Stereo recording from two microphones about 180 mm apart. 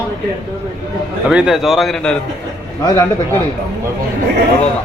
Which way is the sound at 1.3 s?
5° right (ahead or behind).